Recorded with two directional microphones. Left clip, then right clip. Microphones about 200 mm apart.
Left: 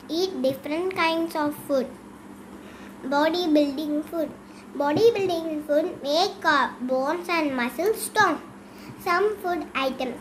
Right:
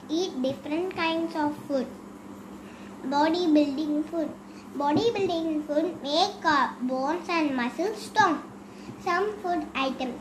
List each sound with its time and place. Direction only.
0.1 s a child's voice: 50° left (ahead or behind)
3.1 s a child's voice: 45° left (ahead or behind)